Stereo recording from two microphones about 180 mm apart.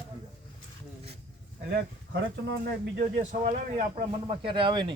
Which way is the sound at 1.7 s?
65° right (ahead or behind).